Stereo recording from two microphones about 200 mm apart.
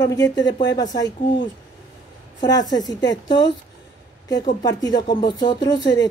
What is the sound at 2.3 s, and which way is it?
A woman's voice, 20° left (ahead or behind).